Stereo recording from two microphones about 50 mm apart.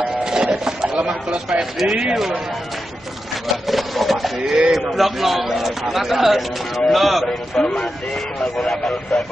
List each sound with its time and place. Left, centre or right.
0.2 s a sound: centre
0.9 s speech: centre
1.8 s a man's voice: centre
3.6 s a man's voice: centre